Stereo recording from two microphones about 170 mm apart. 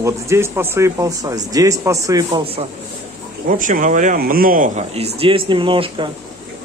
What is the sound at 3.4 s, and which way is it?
Speech, 55° right (ahead or behind).